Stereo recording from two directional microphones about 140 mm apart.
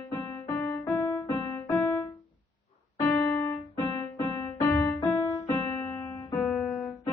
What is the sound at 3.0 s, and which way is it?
Music, 15° left (ahead or behind).